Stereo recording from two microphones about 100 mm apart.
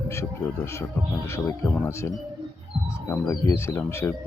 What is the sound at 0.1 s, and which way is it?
Speech, 25° left (ahead or behind).